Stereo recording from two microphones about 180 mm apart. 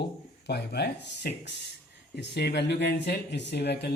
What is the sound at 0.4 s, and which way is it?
Speech, 65° left (ahead or behind).